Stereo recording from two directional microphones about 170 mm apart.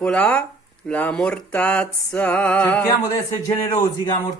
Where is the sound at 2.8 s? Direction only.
20° left (ahead or behind).